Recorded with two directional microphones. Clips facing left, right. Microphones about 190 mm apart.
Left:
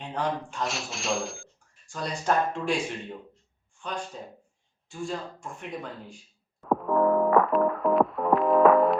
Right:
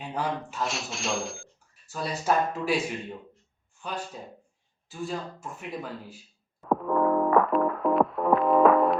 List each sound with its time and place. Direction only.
0.0 s speech: 5° right (ahead or behind)
6.7 s music: centre (ahead or behind)